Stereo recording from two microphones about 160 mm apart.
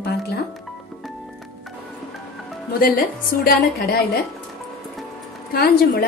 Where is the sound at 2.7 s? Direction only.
65° left (ahead or behind).